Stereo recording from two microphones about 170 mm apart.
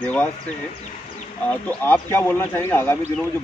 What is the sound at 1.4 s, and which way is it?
Speech, 10° left (ahead or behind).